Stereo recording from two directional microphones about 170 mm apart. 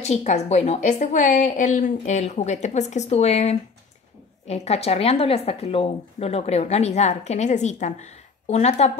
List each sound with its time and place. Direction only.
0.0 s a woman's voice: 40° left (ahead or behind)